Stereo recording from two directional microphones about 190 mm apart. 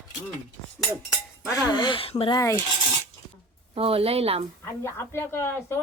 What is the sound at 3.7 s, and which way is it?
Speech, 30° right (ahead or behind).